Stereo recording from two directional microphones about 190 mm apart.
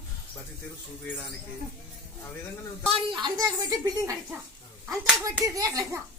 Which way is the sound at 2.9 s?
25° right (ahead or behind).